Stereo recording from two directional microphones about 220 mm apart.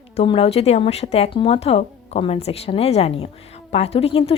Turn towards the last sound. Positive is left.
turn(degrees=25)  # may be behind; listen again after turning